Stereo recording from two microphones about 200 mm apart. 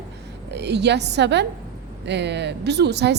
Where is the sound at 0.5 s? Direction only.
55° right (ahead or behind).